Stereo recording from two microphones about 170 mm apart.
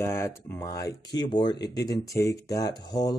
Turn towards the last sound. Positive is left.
turn(degrees=20)  # may be behind; listen again after turning